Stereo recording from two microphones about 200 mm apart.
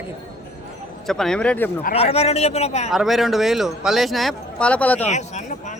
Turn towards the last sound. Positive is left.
turn(degrees=35)  # may be behind; listen again after turning